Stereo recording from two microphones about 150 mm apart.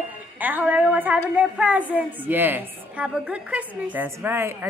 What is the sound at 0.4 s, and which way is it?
A woman's voice, 10° right (ahead or behind).